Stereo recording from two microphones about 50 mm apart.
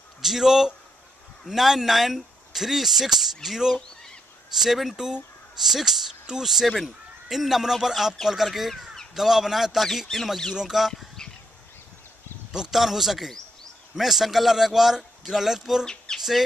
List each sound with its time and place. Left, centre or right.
0.2 s a man's voice: centre
10.9 s a sound: centre
12.5 s a man's voice: centre
15.8 s speech: centre